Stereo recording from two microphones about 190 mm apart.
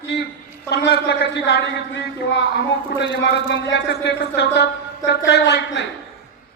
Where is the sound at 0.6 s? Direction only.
60° left (ahead or behind).